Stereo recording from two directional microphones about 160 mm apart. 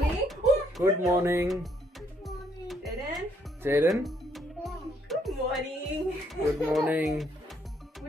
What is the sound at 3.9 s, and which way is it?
Music, centre (ahead or behind).